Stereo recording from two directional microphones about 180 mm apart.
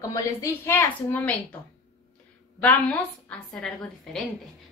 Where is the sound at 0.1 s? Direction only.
15° left (ahead or behind).